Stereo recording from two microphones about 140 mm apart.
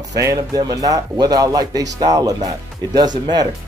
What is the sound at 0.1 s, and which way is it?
Speech, 25° right (ahead or behind).